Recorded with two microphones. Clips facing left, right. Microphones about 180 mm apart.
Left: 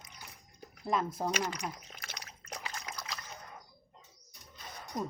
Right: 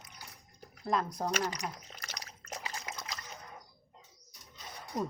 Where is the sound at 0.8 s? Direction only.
5° left (ahead or behind).